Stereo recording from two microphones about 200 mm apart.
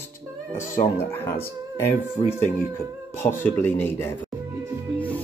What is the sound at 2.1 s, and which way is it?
Speech, 35° left (ahead or behind).